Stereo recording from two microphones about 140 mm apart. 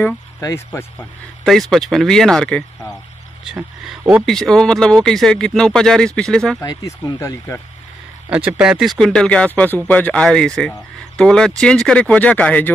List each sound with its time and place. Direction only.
0.4 s speech: 20° left (ahead or behind)
1.4 s speech: centre (ahead or behind)
4.3 s speech: 5° left (ahead or behind)
6.6 s speech: 25° left (ahead or behind)
8.5 s speech: 5° right (ahead or behind); by 12.7 s 10° left (ahead or behind)